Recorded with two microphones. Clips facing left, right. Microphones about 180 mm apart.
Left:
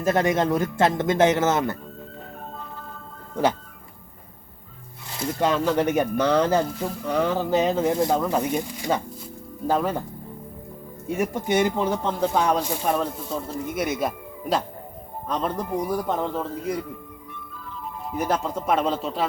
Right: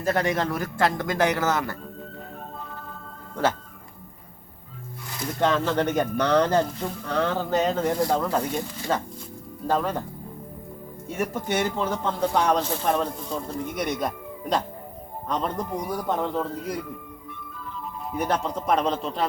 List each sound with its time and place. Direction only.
0.0 s speech: 20° left (ahead or behind)
5.4 s speech: 10° left (ahead or behind)
11.2 s speech: 15° left (ahead or behind)
15.3 s speech: 5° left (ahead or behind)
18.2 s speech: 5° left (ahead or behind)